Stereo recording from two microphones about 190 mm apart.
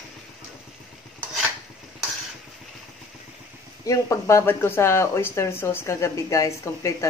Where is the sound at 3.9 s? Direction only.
15° left (ahead or behind).